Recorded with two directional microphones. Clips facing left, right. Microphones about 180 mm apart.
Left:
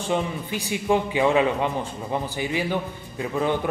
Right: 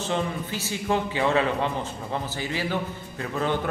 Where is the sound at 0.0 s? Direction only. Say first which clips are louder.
Left 2 dB; 15° left (ahead or behind).